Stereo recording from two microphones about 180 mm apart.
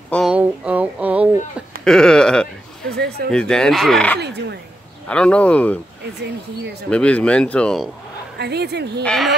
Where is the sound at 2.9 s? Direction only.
65° right (ahead or behind).